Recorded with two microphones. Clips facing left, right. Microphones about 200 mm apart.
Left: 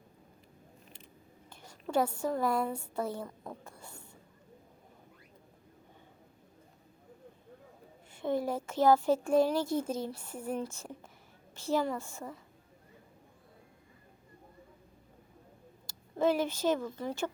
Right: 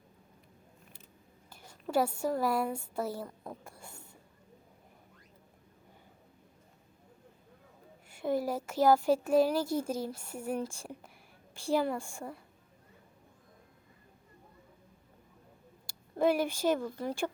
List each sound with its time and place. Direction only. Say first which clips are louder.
1.5 s a woman's voice: even; 10° right (ahead or behind)
8.1 s speech: even; 5° right (ahead or behind)
16.1 s speech: right 1 dB; 10° right (ahead or behind)